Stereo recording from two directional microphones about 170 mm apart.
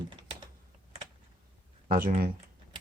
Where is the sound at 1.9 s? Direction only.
55° right (ahead or behind).